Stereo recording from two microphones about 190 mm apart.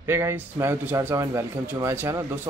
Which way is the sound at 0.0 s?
15° right (ahead or behind).